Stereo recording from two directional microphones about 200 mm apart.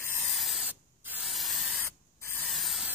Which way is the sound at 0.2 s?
Centre (ahead or behind).